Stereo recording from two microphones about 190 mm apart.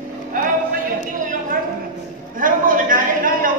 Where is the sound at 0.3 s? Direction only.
45° right (ahead or behind).